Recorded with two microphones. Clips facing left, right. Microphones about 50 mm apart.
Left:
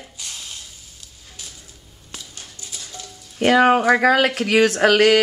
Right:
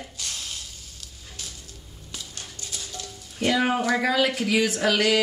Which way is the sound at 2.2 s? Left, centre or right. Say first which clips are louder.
Even; centre.